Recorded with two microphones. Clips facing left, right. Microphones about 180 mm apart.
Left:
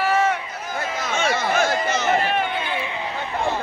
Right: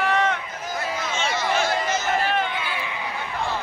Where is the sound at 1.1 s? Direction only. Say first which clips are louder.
Left 4 dB; 55° left (ahead or behind).